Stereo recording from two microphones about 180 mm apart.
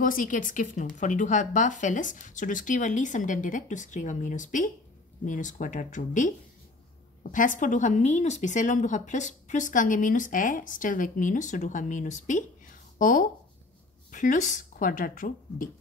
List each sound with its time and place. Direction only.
0.0 s speech: 50° left (ahead or behind)